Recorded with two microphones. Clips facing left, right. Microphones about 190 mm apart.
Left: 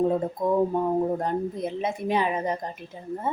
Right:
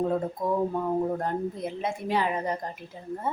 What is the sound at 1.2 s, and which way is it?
Speech, 20° left (ahead or behind).